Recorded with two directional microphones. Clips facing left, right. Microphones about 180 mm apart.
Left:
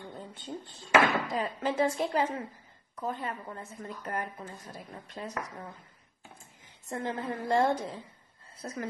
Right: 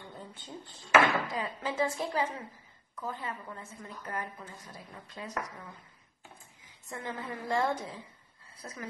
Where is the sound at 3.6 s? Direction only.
45° left (ahead or behind).